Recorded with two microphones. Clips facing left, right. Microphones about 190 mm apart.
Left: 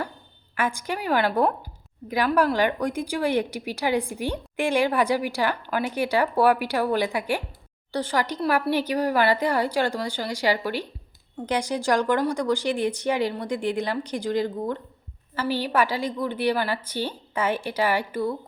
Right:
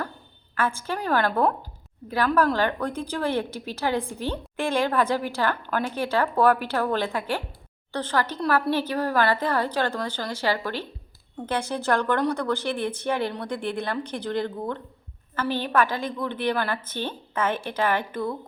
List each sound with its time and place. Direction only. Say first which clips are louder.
0.5 s a woman's voice: even; 15° left (ahead or behind)